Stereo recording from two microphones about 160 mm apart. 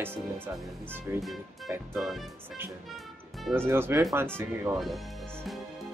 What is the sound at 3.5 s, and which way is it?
Speech, 15° right (ahead or behind).